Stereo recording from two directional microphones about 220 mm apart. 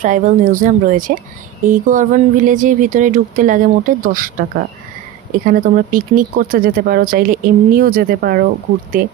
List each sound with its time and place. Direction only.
0.0 s speech: 35° right (ahead or behind)